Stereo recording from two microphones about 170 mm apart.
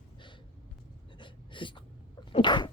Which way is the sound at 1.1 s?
30° left (ahead or behind).